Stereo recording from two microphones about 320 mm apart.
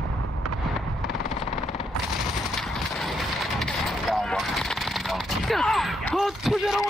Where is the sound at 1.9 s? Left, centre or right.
Centre.